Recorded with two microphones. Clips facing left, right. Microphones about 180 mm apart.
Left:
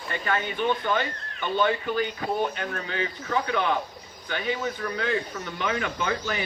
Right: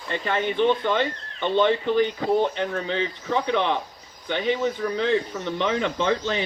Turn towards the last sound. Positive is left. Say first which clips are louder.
# right 5 dB
turn(degrees=-25)  # may be behind; listen again after turning